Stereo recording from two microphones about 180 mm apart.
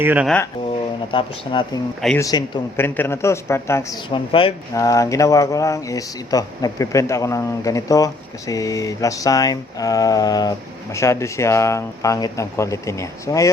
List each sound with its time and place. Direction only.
0.0 s speech: 10° right (ahead or behind)
1.1 s speech: 25° left (ahead or behind)
4.7 s speech: 20° left (ahead or behind)